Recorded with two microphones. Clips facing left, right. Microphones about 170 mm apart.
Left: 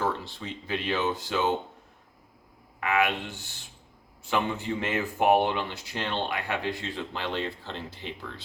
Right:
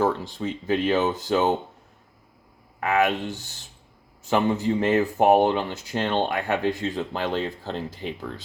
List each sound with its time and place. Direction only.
0.0 s speech: 45° right (ahead or behind)
2.8 s speech: 40° right (ahead or behind)